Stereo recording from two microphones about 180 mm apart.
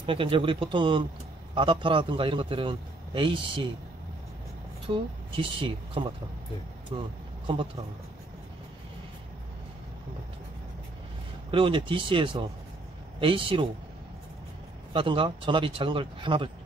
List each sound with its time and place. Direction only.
0.0 s a man's voice: 30° right (ahead or behind)
4.8 s a man's voice: 25° right (ahead or behind)
11.5 s a man's voice: 30° right (ahead or behind)
14.9 s a man's voice: 30° right (ahead or behind)